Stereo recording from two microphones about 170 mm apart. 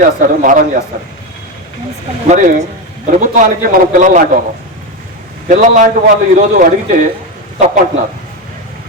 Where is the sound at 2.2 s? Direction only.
50° right (ahead or behind).